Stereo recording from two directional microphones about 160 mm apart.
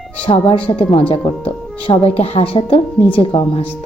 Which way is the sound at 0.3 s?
35° left (ahead or behind).